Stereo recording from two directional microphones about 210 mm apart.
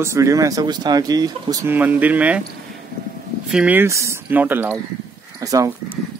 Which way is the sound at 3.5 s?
5° right (ahead or behind).